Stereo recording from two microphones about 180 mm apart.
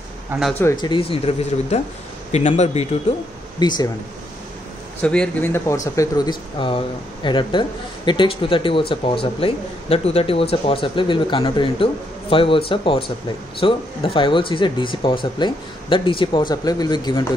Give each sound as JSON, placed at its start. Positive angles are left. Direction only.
{"t": 0.3, "sound": "speech", "side_deg": -10}
{"t": 0.7, "sound": "speech", "side_deg": 25}
{"t": 3.5, "sound": "speech", "side_deg": 25}
{"t": 5.0, "sound": "a man's voice", "side_deg": 5}
{"t": 5.9, "sound": "speech", "side_deg": 20}